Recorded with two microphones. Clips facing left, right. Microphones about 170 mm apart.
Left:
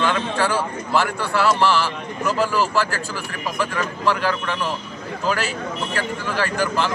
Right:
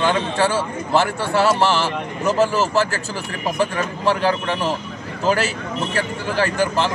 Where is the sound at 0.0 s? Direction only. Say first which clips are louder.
Right 2 dB; 25° right (ahead or behind).